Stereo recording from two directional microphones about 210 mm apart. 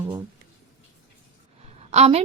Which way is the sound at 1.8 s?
30° right (ahead or behind).